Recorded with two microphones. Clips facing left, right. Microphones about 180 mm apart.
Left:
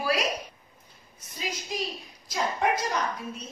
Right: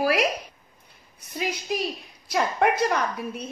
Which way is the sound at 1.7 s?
65° right (ahead or behind).